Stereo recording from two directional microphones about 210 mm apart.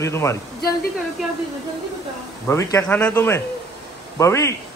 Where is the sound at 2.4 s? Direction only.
15° left (ahead or behind).